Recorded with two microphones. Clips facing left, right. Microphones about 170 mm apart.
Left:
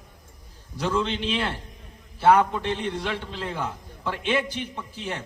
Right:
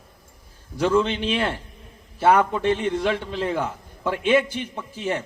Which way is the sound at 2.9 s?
50° right (ahead or behind).